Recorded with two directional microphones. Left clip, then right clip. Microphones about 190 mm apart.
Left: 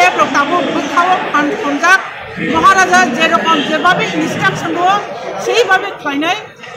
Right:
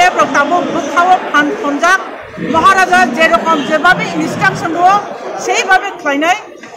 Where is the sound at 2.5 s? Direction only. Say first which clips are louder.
Even; 10° right (ahead or behind).